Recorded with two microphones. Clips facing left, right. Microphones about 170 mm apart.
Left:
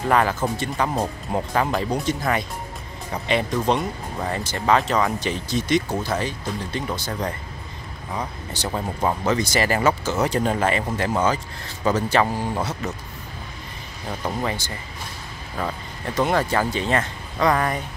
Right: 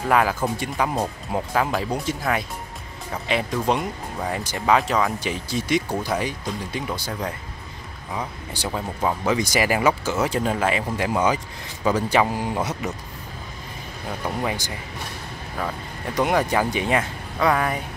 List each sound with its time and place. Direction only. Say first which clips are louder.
0.1 s speech: even; 5° right (ahead or behind)
9.3 s speech: right 2 dB; 10° right (ahead or behind)
14.4 s speech: even; 10° right (ahead or behind)
16.2 s speech: even; 15° right (ahead or behind)